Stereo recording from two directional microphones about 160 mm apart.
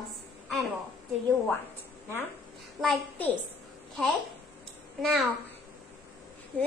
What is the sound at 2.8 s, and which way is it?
Speech, 5° left (ahead or behind).